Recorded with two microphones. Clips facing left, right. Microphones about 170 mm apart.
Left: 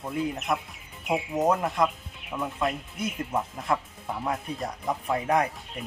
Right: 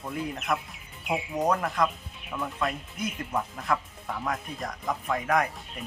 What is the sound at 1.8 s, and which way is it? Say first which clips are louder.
Speech: left 1 dB; 25° left (ahead or behind).